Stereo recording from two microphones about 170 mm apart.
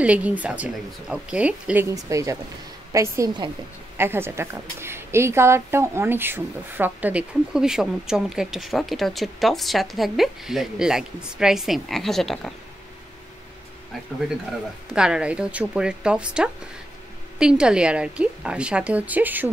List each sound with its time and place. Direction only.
0.0 s a woman's voice: 10° right (ahead or behind)
15.0 s a woman's voice: 5° right (ahead or behind)